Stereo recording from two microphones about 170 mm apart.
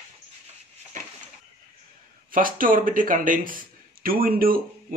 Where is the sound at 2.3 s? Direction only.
55° right (ahead or behind).